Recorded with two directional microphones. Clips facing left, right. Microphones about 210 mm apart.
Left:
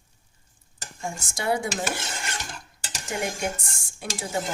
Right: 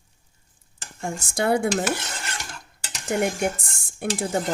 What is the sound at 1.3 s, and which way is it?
Speech, 55° right (ahead or behind).